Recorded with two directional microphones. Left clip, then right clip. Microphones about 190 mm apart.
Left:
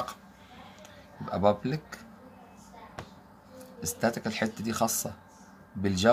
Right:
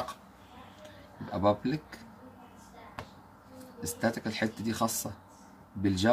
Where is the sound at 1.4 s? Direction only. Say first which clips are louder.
Left 2 dB; 45° left (ahead or behind).